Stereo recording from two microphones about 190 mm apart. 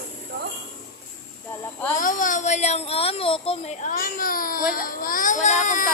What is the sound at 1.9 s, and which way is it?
Speech, 45° left (ahead or behind).